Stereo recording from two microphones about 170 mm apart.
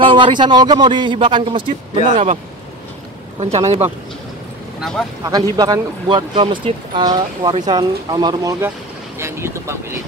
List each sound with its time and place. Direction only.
0.0 s speech: 30° right (ahead or behind)
3.3 s speech: 40° right (ahead or behind)
5.2 s speech: 20° right (ahead or behind)